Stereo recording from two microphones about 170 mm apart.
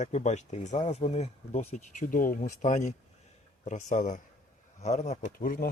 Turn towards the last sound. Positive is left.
turn(degrees=55)  # may be behind; listen again after turning